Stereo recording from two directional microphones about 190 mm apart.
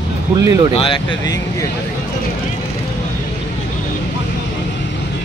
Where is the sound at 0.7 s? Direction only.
30° left (ahead or behind).